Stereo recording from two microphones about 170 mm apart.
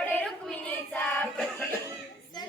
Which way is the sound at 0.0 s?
10° left (ahead or behind).